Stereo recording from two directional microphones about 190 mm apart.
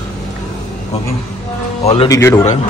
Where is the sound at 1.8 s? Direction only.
35° left (ahead or behind).